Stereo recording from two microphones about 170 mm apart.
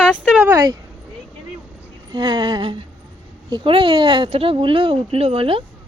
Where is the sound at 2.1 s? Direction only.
25° right (ahead or behind).